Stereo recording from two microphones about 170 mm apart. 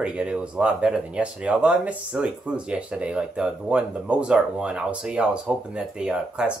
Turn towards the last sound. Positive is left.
turn(degrees=-5)  # may be behind; listen again after turning